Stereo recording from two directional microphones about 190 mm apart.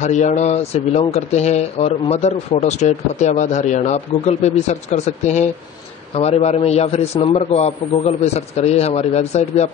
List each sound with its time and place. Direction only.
0.0 s speech: 40° left (ahead or behind)